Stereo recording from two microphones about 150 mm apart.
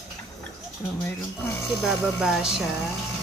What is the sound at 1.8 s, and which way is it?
Speech, 5° right (ahead or behind).